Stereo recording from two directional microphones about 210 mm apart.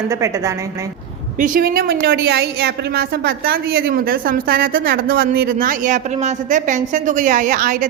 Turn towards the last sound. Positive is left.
turn(degrees=-40)  # may be behind; listen again after turning